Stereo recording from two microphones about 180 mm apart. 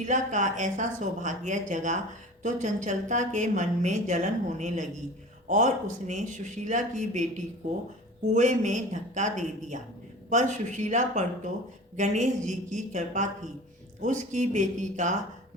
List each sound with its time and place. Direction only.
0.0 s a woman's voice: 45° right (ahead or behind)
8.3 s a woman's voice: 40° right (ahead or behind)